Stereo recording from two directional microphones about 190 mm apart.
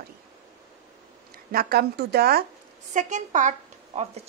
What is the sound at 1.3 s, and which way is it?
Speech, 50° right (ahead or behind).